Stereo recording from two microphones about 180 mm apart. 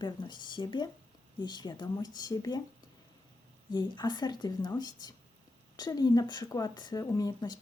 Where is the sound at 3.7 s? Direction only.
25° left (ahead or behind).